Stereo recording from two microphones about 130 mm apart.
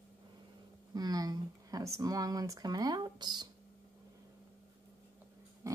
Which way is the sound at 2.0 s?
30° right (ahead or behind).